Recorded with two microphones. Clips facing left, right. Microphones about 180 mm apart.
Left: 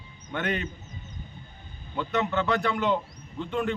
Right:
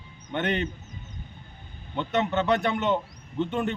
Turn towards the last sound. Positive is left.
turn(degrees=-20)  # may be behind; listen again after turning